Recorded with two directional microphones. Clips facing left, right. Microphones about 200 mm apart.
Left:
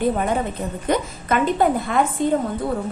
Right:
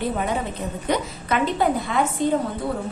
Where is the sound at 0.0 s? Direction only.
50° left (ahead or behind).